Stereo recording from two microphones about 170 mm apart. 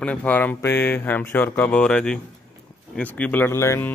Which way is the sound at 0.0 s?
10° left (ahead or behind).